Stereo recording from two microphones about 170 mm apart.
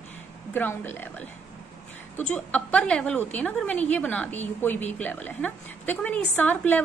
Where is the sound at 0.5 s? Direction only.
10° left (ahead or behind).